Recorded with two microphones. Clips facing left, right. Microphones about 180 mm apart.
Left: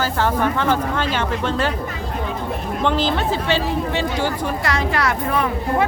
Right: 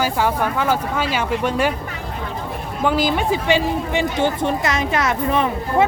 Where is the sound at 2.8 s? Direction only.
10° right (ahead or behind).